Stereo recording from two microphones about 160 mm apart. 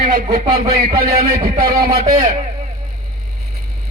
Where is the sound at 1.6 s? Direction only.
70° right (ahead or behind).